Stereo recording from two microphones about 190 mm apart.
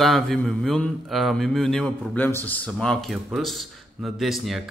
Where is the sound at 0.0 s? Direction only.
Centre (ahead or behind).